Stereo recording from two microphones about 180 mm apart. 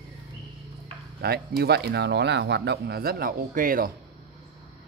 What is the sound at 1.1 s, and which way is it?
Speech, 60° right (ahead or behind).